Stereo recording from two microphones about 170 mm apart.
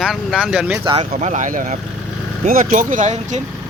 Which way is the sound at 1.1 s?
45° right (ahead or behind).